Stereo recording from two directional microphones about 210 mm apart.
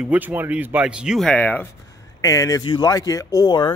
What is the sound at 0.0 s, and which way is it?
Speech, 5° right (ahead or behind).